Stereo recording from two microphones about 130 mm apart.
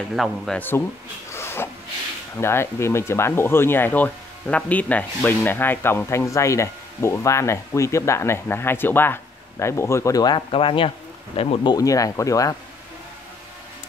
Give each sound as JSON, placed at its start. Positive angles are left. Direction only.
{"t": 0.1, "sound": "speech", "side_deg": 0}
{"t": 0.6, "sound": "speech", "side_deg": 15}
{"t": 1.3, "sound": "a sound", "side_deg": 20}
{"t": 2.3, "sound": "speech", "side_deg": 20}
{"t": 10.5, "sound": "speech", "side_deg": 45}
{"t": 11.7, "sound": "speech", "side_deg": 25}